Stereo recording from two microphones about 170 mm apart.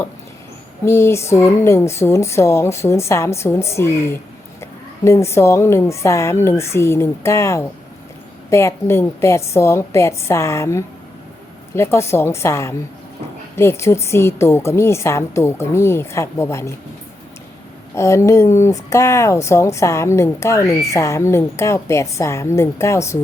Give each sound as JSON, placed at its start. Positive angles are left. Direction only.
{"t": 0.9, "sound": "speech", "side_deg": 15}
{"t": 17.9, "sound": "speech", "side_deg": 15}